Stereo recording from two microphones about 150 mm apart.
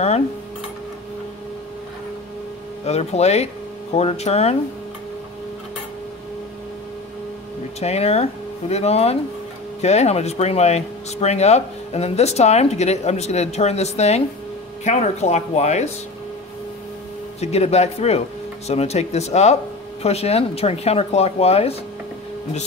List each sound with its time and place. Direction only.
2.8 s speech: 45° left (ahead or behind)
7.8 s speech: 45° left (ahead or behind)
17.4 s speech: 45° left (ahead or behind)